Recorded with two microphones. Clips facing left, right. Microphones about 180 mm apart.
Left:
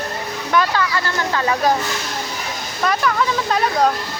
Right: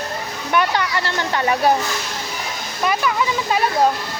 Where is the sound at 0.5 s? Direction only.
20° right (ahead or behind).